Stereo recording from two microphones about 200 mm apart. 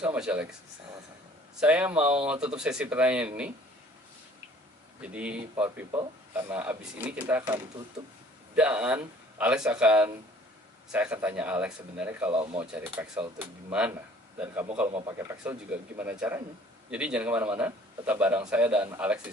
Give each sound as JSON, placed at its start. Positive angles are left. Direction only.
{"t": 0.0, "sound": "a man's voice", "side_deg": -5}
{"t": 1.6, "sound": "speech", "side_deg": -5}
{"t": 5.0, "sound": "a man's voice", "side_deg": -5}
{"t": 5.9, "sound": "a man's voice", "side_deg": -20}
{"t": 8.0, "sound": "speech", "side_deg": -20}
{"t": 8.5, "sound": "a man's voice", "side_deg": -5}